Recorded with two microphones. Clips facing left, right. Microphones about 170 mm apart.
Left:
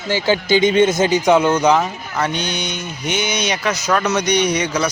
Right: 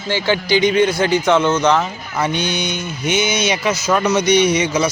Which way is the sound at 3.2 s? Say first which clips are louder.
Right 2 dB; 5° right (ahead or behind).